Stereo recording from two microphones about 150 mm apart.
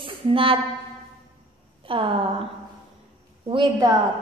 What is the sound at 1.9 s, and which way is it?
Speech, 35° right (ahead or behind).